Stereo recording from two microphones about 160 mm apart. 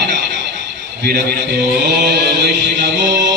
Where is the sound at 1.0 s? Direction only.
85° right.